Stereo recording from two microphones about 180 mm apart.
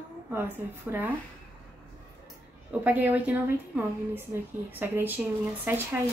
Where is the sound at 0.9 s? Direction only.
15° right (ahead or behind).